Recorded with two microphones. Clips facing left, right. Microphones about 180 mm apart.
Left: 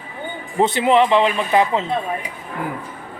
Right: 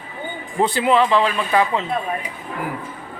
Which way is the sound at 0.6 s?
20° left (ahead or behind).